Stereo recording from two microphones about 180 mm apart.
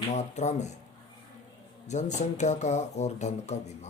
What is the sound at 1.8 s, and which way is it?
Speech, 40° left (ahead or behind).